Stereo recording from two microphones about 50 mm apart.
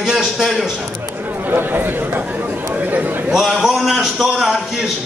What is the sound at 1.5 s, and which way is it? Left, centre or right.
Speech, right.